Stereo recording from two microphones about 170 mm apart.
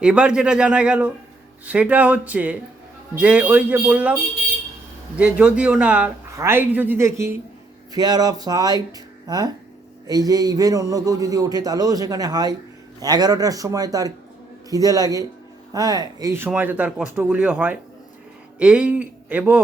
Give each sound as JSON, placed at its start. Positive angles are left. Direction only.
{"t": 0.0, "sound": "speech", "side_deg": -5}
{"t": 5.1, "sound": "a man's voice", "side_deg": -5}